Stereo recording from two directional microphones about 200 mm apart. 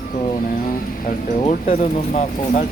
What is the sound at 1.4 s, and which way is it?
Speech, 35° left (ahead or behind).